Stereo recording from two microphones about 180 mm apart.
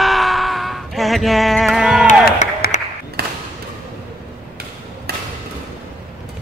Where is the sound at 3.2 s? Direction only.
60° right (ahead or behind).